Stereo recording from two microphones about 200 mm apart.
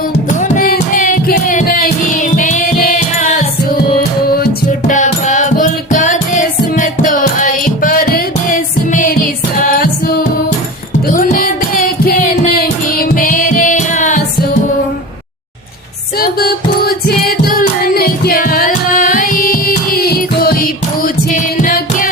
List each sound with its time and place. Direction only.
0.3 s music: 40° left (ahead or behind)
4.9 s music: 35° left (ahead or behind)
11.2 s music: 45° left (ahead or behind)
16.1 s music: 50° left (ahead or behind)